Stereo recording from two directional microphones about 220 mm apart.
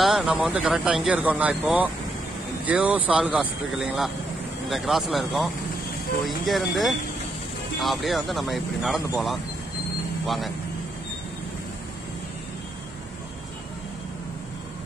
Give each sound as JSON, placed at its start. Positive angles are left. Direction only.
{"t": 0.0, "sound": "speech", "side_deg": 0}